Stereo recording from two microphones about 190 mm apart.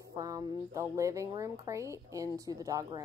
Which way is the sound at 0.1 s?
20° right (ahead or behind).